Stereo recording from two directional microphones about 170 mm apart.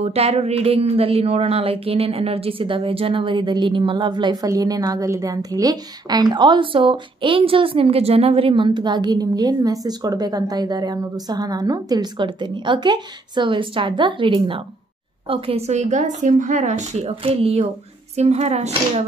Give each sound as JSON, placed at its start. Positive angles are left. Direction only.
{"t": 0.0, "sound": "a woman's voice", "side_deg": -35}